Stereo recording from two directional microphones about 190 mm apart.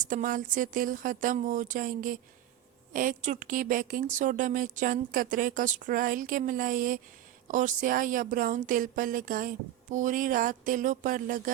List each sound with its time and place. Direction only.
0.0 s a woman's voice: 45° right (ahead or behind)